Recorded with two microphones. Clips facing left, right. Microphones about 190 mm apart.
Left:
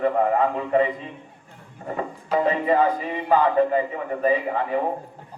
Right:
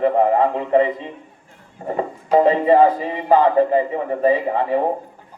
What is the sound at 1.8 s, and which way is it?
Speech, 30° right (ahead or behind).